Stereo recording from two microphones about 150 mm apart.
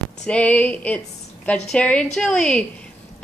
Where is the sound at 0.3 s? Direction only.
10° left (ahead or behind).